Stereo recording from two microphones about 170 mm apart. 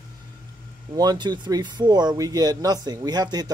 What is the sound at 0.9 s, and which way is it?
Speech, 25° right (ahead or behind).